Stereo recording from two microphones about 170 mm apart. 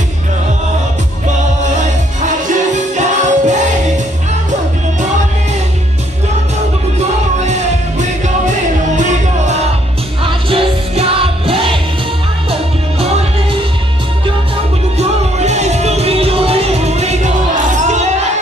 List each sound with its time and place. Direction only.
2.2 s music: 45° right (ahead or behind)
8.9 s music: 45° right (ahead or behind)
10.2 s music: 30° right (ahead or behind)
13.0 s music: 35° right (ahead or behind)
15.0 s music: 40° right (ahead or behind)